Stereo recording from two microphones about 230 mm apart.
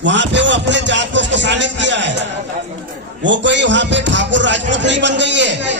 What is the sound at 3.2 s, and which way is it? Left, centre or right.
A man's voice, right.